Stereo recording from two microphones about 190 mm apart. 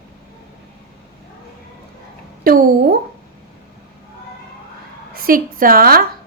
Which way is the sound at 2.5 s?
55° right (ahead or behind).